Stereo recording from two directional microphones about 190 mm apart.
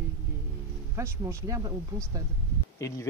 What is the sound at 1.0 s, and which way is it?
Speech, 15° right (ahead or behind).